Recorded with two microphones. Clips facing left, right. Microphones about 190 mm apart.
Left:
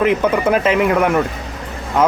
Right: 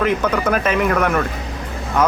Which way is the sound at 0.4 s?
20° left (ahead or behind).